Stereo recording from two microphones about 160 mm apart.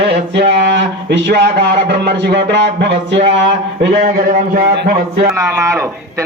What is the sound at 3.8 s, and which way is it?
A man's voice, 70° right (ahead or behind).